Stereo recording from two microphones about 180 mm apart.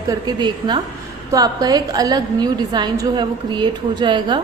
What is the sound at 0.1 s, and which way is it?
A woman's voice, 25° right (ahead or behind).